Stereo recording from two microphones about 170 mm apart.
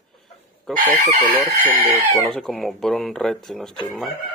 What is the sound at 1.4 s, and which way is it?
Speech, 20° left (ahead or behind).